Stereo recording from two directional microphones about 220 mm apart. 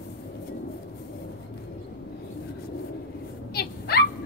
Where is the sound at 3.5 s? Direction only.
45° left (ahead or behind).